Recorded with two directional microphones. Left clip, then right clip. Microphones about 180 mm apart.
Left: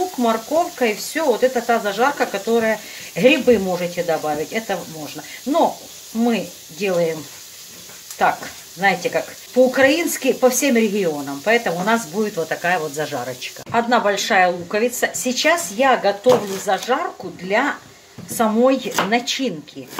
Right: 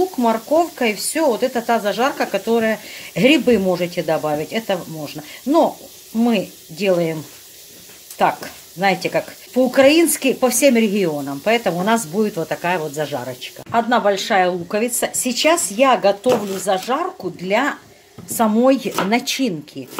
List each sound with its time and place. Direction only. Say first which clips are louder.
0.2 s sizzle: right 1 dB; 55° right (ahead or behind)
8.2 s sizzle: even; 55° right (ahead or behind)
12.4 s speech: left 1 dB; 35° right (ahead or behind)
13.0 s a woman's voice: even; 25° right (ahead or behind)
13.7 s a woman's voice: right 1 dB; 35° right (ahead or behind)
14.7 s sizzle: left 1 dB; 50° right (ahead or behind)
16.6 s speech: even; 55° right (ahead or behind)
17.5 s sizzle: even; 55° right (ahead or behind)
18.4 s speech: right 1 dB; 50° right (ahead or behind)